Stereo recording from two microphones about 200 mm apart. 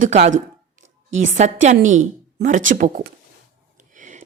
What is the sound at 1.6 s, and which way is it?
Speech, 35° right (ahead or behind).